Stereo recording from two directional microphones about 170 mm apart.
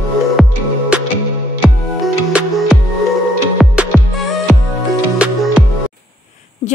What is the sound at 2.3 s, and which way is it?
Music, 5° right (ahead or behind).